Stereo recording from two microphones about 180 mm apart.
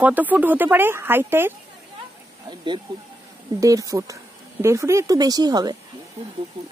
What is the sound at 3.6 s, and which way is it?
A woman's voice, 20° right (ahead or behind).